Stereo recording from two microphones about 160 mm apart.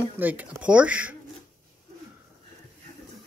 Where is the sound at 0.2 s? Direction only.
10° right (ahead or behind).